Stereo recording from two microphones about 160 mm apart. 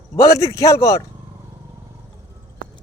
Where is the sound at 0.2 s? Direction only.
20° left (ahead or behind).